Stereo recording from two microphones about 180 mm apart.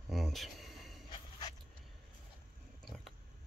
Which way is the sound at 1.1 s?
25° left (ahead or behind).